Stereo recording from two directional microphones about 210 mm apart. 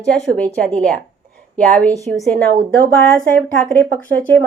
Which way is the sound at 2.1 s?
30° right (ahead or behind).